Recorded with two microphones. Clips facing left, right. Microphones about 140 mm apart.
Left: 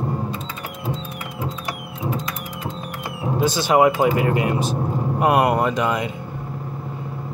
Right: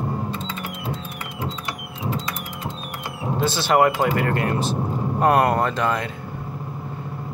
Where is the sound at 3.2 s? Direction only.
15° left (ahead or behind).